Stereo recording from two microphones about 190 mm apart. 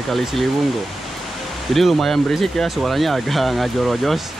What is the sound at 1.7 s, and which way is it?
Speech, centre (ahead or behind).